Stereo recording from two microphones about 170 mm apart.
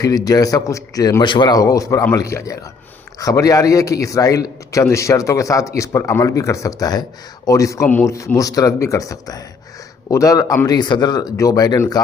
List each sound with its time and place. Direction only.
0.0 s a man's voice: 20° left (ahead or behind)